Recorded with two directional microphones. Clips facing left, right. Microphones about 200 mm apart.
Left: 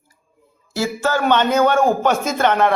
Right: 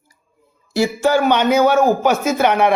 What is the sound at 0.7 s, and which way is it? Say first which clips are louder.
Speech: right 5 dB; 15° right (ahead or behind).